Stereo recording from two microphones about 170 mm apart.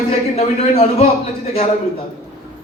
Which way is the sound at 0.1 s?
40° left (ahead or behind).